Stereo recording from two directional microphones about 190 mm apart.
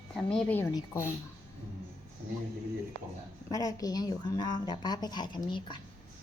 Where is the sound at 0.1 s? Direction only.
5° left (ahead or behind).